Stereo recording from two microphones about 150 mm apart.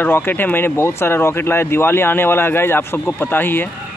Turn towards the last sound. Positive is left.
turn(degrees=15)  # may be behind; listen again after turning